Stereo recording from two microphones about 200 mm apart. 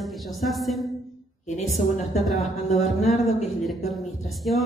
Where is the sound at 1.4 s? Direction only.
35° left (ahead or behind).